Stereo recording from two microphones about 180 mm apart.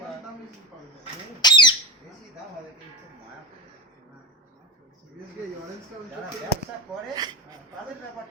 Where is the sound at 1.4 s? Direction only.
25° left (ahead or behind).